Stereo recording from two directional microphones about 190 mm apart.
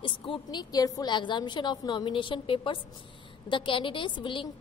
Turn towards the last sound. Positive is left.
turn(degrees=25)  # may be behind; listen again after turning